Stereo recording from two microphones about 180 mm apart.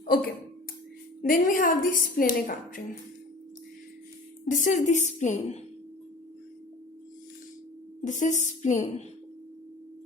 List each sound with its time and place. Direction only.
0.0 s a sound: 55° left (ahead or behind)
1.3 s a woman's voice: 50° left (ahead or behind)
4.4 s a woman's voice: 45° left (ahead or behind)
8.0 s a woman's voice: 45° left (ahead or behind)